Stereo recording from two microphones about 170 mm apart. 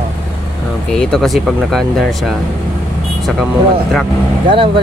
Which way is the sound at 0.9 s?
Centre (ahead or behind).